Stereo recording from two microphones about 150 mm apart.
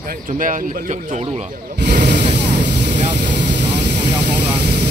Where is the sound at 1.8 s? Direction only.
90° right.